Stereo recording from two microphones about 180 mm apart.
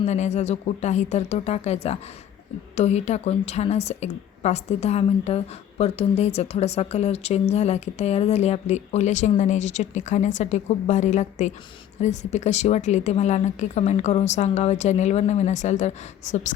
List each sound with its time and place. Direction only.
0.0 s a woman's voice: 40° left (ahead or behind)